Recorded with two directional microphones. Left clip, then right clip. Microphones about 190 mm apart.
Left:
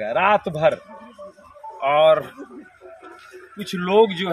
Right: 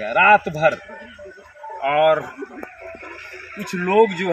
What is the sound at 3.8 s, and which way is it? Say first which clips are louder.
Speech: even; 15° left (ahead or behind).